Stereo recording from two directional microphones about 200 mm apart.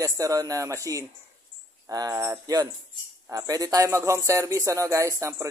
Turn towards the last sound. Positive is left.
turn(degrees=-15)  # may be behind; listen again after turning